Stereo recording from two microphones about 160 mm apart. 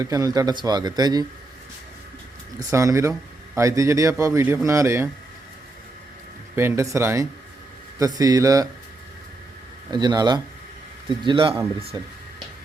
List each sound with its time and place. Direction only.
0.0 s speech: 20° right (ahead or behind)
2.6 s speech: 20° right (ahead or behind)
6.6 s speech: 15° right (ahead or behind)
9.9 s speech: 25° right (ahead or behind)